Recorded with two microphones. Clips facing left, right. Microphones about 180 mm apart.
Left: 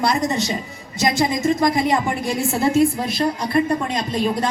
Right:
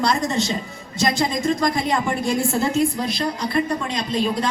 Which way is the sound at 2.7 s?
5° left (ahead or behind).